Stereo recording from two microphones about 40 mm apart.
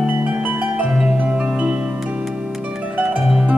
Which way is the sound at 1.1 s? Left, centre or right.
Right.